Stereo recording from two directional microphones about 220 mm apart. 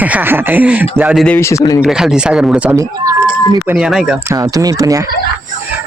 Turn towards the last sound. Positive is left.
turn(degrees=-15)  # may be behind; listen again after turning